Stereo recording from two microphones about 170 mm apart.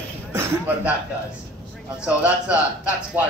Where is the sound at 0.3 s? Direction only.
15° right (ahead or behind).